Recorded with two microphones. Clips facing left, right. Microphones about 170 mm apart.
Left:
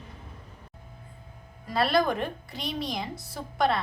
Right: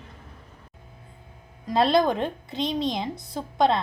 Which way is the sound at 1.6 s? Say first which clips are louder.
Right 4 dB; 20° right (ahead or behind).